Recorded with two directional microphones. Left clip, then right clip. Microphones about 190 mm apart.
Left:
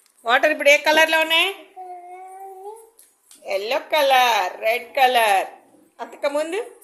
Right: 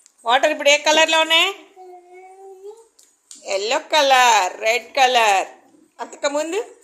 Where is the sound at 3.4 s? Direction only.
15° right (ahead or behind).